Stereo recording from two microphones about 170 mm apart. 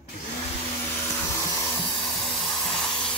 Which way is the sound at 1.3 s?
20° left (ahead or behind).